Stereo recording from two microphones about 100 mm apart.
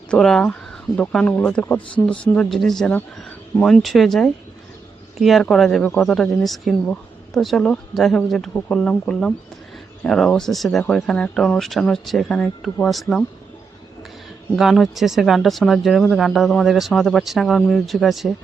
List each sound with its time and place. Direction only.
0.1 s speech: 5° left (ahead or behind)
14.5 s speech: centre (ahead or behind)